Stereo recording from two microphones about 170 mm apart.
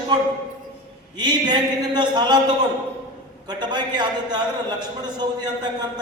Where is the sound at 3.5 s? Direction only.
25° right (ahead or behind).